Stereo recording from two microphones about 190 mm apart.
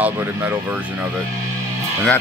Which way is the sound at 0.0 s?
10° right (ahead or behind).